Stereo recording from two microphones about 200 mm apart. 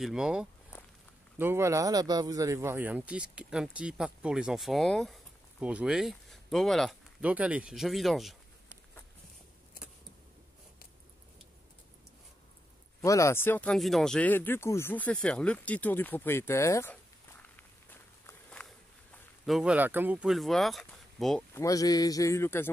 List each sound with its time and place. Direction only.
0.0 s speech: 5° right (ahead or behind)
0.7 s walk: 15° left (ahead or behind)
1.4 s speech: 15° right (ahead or behind)
13.0 s speech: 15° left (ahead or behind)
19.4 s speech: 5° right (ahead or behind)
21.5 s speech: 15° left (ahead or behind)